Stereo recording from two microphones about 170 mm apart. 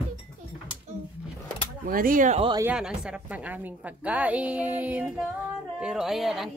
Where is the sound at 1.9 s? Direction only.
55° right (ahead or behind).